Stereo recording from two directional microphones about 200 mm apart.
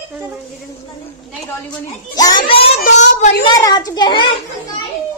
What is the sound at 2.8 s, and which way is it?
Speech, 35° left (ahead or behind).